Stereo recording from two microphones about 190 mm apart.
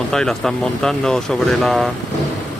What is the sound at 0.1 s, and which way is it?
Speech, 5° left (ahead or behind).